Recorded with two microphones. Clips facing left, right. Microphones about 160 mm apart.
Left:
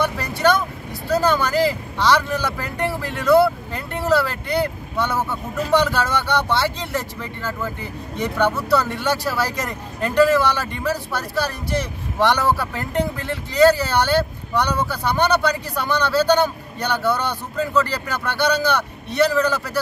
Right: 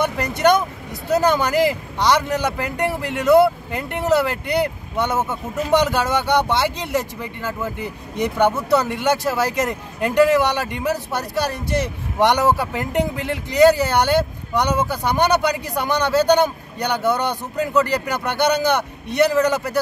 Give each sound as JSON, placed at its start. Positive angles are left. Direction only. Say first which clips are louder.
{"t": 0.0, "sound": "speech", "louder": "right 2 dB", "side_deg": -20}